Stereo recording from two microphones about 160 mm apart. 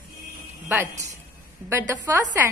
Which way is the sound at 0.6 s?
15° right (ahead or behind).